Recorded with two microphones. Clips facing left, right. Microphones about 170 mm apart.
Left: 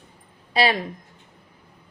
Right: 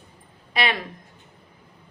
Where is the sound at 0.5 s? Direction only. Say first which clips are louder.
Left 4 dB; 35° left (ahead or behind).